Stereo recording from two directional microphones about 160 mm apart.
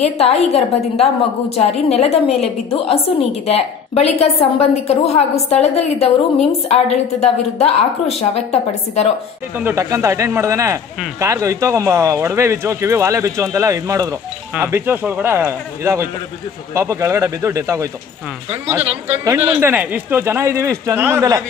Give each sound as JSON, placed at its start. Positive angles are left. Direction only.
{"t": 0.0, "sound": "a woman's voice", "side_deg": 40}
{"t": 9.6, "sound": "speech", "side_deg": -15}
{"t": 19.0, "sound": "speech", "side_deg": -15}